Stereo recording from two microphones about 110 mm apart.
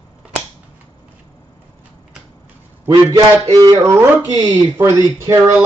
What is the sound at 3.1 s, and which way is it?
Speech, 30° right (ahead or behind).